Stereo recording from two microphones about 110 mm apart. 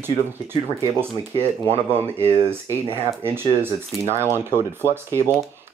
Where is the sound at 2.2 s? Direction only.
60° right (ahead or behind).